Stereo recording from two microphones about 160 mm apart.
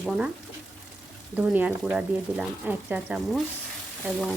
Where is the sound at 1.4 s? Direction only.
10° right (ahead or behind).